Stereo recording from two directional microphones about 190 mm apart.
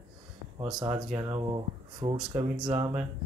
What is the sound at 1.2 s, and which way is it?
Speech, 15° right (ahead or behind).